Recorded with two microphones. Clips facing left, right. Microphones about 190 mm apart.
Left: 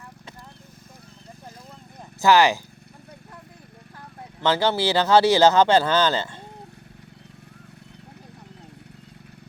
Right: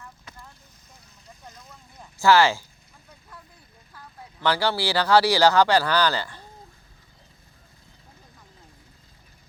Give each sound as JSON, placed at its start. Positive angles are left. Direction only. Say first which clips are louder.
{"t": 2.1, "sound": "speech", "louder": "left 1 dB", "side_deg": 20}
{"t": 4.4, "sound": "speech", "louder": "left 3 dB", "side_deg": 20}